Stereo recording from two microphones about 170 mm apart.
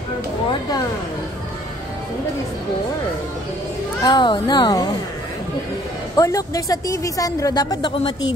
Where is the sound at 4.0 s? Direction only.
25° left (ahead or behind).